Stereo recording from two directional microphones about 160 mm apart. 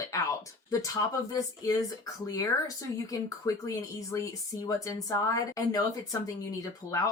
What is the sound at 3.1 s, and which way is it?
Speech, 20° left (ahead or behind).